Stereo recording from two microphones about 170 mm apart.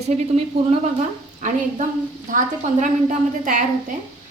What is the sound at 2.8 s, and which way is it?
Speech, 50° right (ahead or behind).